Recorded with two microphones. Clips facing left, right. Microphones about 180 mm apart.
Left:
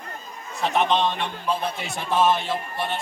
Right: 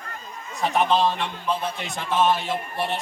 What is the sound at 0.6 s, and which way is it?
Speech, 5° right (ahead or behind).